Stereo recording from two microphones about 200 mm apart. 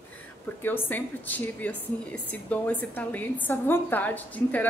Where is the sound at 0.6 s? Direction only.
10° left (ahead or behind).